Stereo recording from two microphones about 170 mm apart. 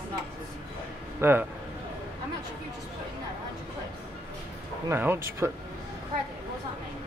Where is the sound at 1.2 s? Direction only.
10° right (ahead or behind).